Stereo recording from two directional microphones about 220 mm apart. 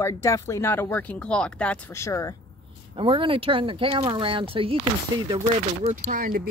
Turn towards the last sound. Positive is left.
turn(degrees=-40)  # may be behind; listen again after turning